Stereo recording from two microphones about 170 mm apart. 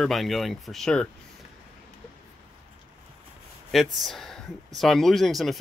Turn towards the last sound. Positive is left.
turn(degrees=0)  # may be behind; listen again after turning